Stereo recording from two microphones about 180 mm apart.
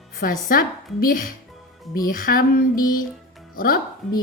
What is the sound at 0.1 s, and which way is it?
A woman's voice, 55° left (ahead or behind).